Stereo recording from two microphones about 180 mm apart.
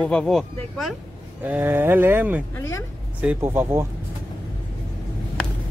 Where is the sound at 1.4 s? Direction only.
10° right (ahead or behind).